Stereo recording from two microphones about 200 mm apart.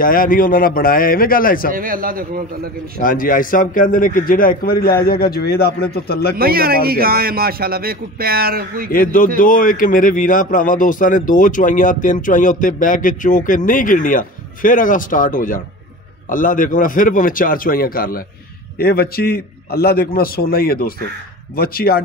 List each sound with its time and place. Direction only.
0.0 s a man's voice: 45° left (ahead or behind)
1.7 s speech: 45° right (ahead or behind)
3.0 s a man's voice: 45° left (ahead or behind)
6.3 s speech: 50° right (ahead or behind)
8.9 s a man's voice: 45° left (ahead or behind)